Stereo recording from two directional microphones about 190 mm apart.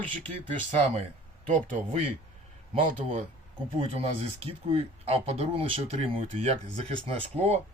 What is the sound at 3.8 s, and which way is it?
Speech, 30° right (ahead or behind).